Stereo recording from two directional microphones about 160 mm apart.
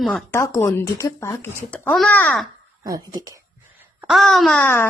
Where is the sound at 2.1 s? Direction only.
10° left (ahead or behind).